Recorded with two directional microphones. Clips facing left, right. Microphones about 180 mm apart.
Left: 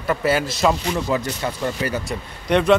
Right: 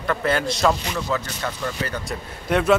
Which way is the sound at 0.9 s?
20° left (ahead or behind).